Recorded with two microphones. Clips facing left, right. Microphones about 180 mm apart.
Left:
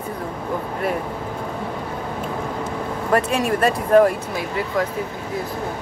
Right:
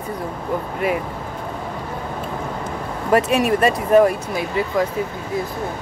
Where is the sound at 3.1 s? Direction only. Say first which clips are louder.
Right 3 dB; 5° right (ahead or behind).